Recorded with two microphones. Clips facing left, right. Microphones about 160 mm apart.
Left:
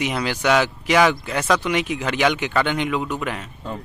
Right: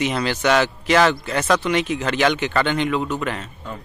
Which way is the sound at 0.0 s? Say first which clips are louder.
Right 2 dB; 10° left (ahead or behind).